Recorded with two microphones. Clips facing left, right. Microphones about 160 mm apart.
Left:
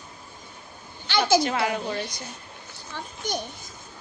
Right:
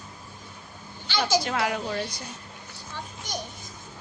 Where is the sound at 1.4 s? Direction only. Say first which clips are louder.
Left 2 dB; centre (ahead or behind).